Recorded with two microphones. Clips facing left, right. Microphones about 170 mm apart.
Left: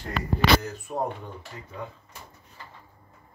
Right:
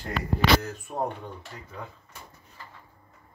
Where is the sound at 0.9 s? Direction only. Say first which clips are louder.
Left 1 dB; centre (ahead or behind).